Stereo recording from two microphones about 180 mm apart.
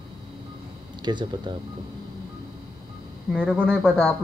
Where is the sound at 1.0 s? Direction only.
25° right (ahead or behind).